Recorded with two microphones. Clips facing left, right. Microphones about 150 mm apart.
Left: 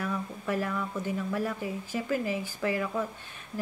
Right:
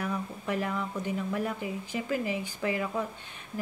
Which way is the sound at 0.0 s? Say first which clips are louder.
Even; 20° right (ahead or behind).